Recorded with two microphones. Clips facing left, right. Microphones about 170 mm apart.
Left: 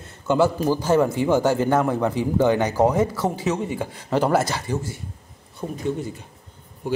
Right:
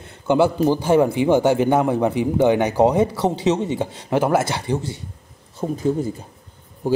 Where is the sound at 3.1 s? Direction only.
70° right (ahead or behind).